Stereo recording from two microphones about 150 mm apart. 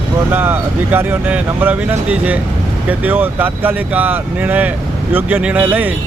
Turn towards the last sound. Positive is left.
turn(degrees=-10)  # may be behind; listen again after turning